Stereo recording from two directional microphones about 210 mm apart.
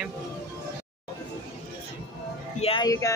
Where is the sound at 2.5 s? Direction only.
25° left (ahead or behind).